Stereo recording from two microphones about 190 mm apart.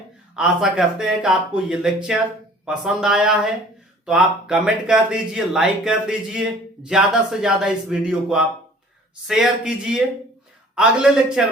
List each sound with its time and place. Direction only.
0.3 s speech: 5° right (ahead or behind)